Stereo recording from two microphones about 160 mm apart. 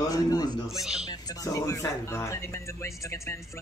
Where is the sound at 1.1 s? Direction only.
25° left (ahead or behind).